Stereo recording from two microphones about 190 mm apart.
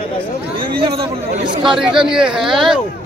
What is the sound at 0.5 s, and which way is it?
Speech, 25° right (ahead or behind).